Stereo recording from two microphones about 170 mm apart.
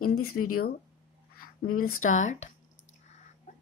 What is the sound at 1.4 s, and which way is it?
Speech, 55° left (ahead or behind).